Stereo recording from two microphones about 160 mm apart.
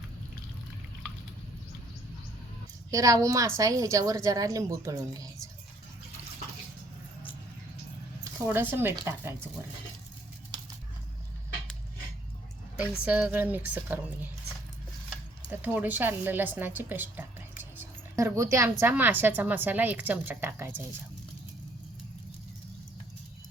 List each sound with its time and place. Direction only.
2.9 s a woman's voice: 20° right (ahead or behind)
8.2 s a woman's voice: 15° right (ahead or behind)
13.1 s a woman's voice: 10° right (ahead or behind)
15.4 s a woman's voice: 10° right (ahead or behind)